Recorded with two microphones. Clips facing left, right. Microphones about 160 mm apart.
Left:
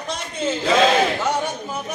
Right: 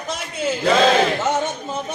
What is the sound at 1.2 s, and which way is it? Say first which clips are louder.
Speech: right 1 dB; 25° right (ahead or behind).